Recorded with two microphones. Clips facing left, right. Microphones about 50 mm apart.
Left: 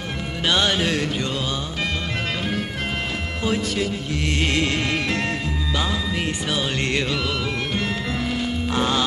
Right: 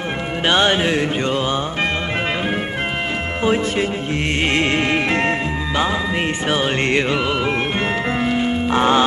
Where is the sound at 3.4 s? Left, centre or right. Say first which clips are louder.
Right 5 dB; right.